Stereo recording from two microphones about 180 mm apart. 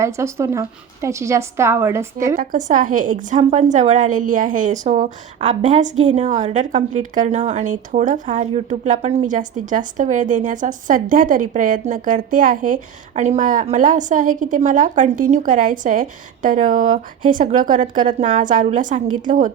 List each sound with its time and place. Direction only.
0.0 s a woman's voice: 15° right (ahead or behind)
2.3 s a woman's voice: 50° right (ahead or behind)